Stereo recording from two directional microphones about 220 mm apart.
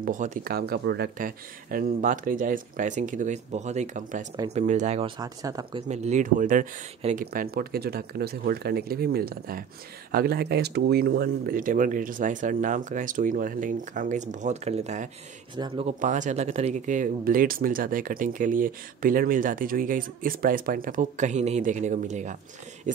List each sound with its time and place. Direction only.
0.0 s speech: 35° right (ahead or behind)
5.2 s speech: 15° right (ahead or behind)
5.9 s speech: 30° right (ahead or behind)
16.0 s speech: 35° right (ahead or behind)